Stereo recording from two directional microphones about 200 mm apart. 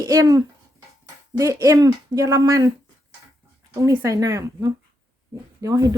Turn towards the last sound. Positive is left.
turn(degrees=-15)  # may be behind; listen again after turning